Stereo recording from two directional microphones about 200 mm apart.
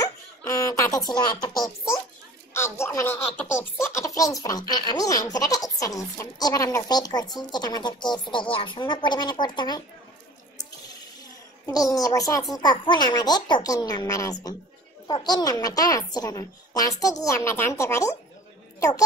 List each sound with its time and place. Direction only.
0.0 s a sound: 15° left (ahead or behind)
2.5 s speech: 15° left (ahead or behind)
11.6 s a woman's voice: 15° left (ahead or behind)